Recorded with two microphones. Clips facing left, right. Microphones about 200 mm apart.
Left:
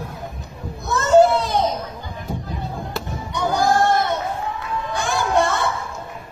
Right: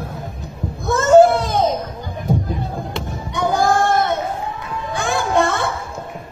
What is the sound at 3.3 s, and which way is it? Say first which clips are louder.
Child singing: right 3 dB; 55° right (ahead or behind).